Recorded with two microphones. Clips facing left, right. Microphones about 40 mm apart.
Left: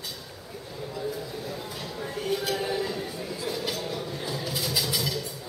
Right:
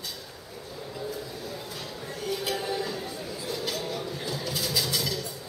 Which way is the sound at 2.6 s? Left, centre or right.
Centre.